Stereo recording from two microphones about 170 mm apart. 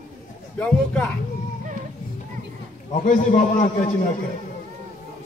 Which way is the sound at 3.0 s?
50° left (ahead or behind).